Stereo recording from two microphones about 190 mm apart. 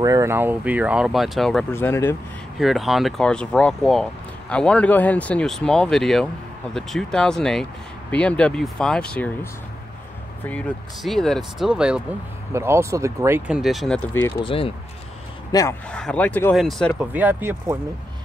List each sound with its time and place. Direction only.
0.0 s speech: 15° right (ahead or behind); by 1.7 s centre (ahead or behind)
1.7 s speech: 10° left (ahead or behind)
2.6 s speech: centre (ahead or behind)
13.5 s speech: centre (ahead or behind)
14.3 s speech: 25° left (ahead or behind)
15.9 s speech: 5° left (ahead or behind)
17.1 s speech: 10° right (ahead or behind)